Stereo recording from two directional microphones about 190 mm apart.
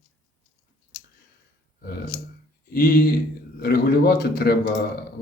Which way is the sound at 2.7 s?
50° left (ahead or behind).